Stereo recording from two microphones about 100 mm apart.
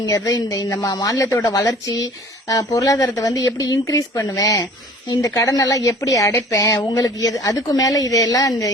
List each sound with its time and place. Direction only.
0.0 s speech: 35° left (ahead or behind)